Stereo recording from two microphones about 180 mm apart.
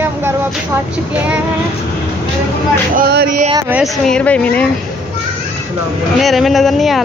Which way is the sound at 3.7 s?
Centre (ahead or behind).